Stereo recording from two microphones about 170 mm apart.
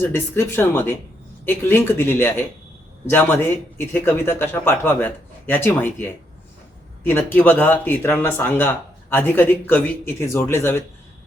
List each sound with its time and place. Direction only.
0.0 s speech: 15° left (ahead or behind)